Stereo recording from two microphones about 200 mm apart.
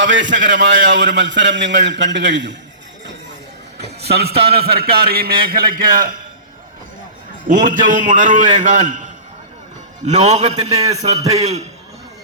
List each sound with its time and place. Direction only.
0.0 s a man's voice: 65° right (ahead or behind)
3.8 s music: 55° right (ahead or behind)
4.5 s a man's voice: 50° right (ahead or behind)
7.4 s a man's voice: 40° right (ahead or behind)
10.1 s a man's voice: 35° right (ahead or behind)